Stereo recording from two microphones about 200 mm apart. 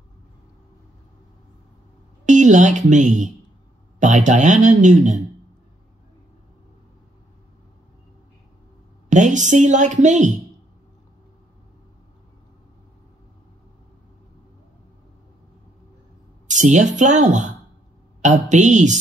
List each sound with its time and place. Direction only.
2.2 s speech: 40° right (ahead or behind)
9.1 s speech: 40° right (ahead or behind)
16.4 s speech: 40° right (ahead or behind)